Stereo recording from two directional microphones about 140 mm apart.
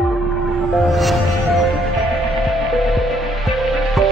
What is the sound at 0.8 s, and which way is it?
Music, centre (ahead or behind).